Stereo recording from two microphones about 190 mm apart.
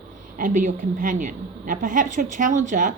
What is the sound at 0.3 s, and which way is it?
A woman's voice, 45° right (ahead or behind).